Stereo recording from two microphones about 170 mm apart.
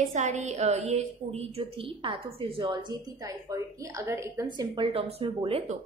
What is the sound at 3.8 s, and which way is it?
Speech, 15° right (ahead or behind).